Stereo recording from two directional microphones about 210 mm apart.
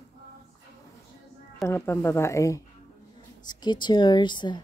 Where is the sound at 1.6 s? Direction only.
10° left (ahead or behind).